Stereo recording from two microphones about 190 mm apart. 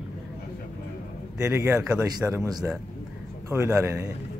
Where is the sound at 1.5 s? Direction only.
15° right (ahead or behind).